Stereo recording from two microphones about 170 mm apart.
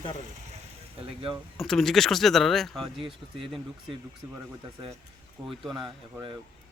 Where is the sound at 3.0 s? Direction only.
30° right (ahead or behind).